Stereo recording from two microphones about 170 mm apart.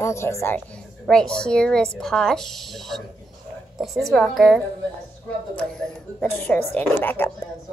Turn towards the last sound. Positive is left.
turn(degrees=10)  # may be behind; listen again after turning